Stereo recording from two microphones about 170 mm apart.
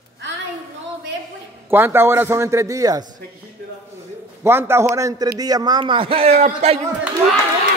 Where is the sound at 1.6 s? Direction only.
15° right (ahead or behind).